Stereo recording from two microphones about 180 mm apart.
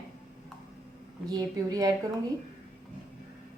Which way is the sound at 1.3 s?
20° right (ahead or behind).